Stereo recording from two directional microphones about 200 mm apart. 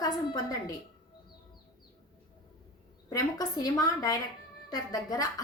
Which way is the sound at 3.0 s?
20° left (ahead or behind).